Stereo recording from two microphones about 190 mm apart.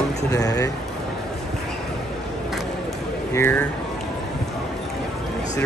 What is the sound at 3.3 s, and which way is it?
Speech, 10° left (ahead or behind).